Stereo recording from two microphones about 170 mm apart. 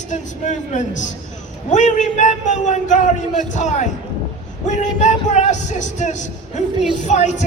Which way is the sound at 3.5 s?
45° left (ahead or behind).